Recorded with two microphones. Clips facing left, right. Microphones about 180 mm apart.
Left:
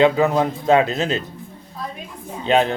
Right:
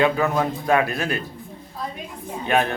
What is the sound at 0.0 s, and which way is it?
A man's voice, 20° left (ahead or behind).